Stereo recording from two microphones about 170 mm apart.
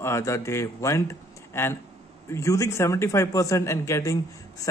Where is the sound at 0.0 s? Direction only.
15° left (ahead or behind).